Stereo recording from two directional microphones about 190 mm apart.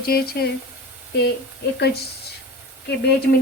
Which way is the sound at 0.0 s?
55° left (ahead or behind).